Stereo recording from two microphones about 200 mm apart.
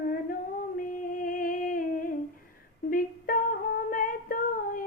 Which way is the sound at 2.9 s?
45° left (ahead or behind).